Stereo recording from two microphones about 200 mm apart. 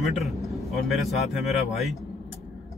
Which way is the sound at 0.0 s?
Centre (ahead or behind).